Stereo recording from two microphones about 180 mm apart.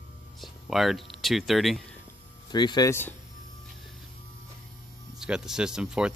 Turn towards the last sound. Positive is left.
turn(degrees=-5)  # may be behind; listen again after turning